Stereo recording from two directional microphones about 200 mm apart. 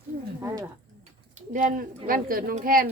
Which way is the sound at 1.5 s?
40° right (ahead or behind).